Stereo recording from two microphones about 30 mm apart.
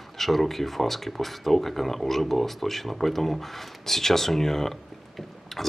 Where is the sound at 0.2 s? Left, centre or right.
Centre.